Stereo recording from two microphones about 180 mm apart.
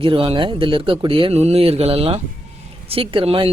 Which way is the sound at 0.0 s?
30° right (ahead or behind).